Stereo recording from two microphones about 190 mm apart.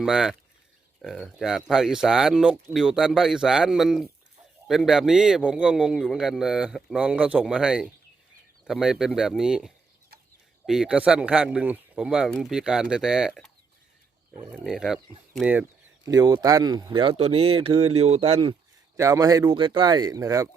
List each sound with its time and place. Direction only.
0.0 s speech: centre (ahead or behind)
14.5 s speech: centre (ahead or behind)
16.0 s speech: 20° right (ahead or behind)
18.9 s speech: 15° right (ahead or behind)